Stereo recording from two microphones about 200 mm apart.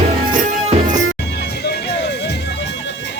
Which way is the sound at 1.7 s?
60° left (ahead or behind).